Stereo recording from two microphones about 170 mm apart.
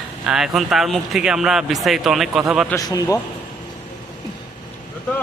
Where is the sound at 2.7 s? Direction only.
20° left (ahead or behind).